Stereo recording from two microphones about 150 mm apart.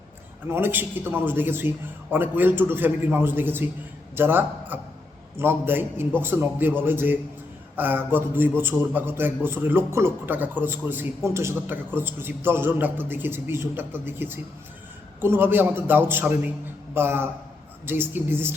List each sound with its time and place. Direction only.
0.4 s a man's voice: 15° right (ahead or behind)